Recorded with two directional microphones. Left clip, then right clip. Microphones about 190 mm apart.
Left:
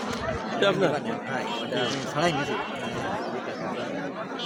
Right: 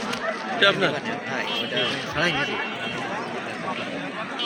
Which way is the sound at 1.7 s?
70° left (ahead or behind).